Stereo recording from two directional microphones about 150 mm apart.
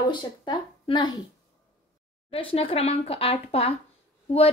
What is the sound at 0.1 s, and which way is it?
Speech, 30° left (ahead or behind).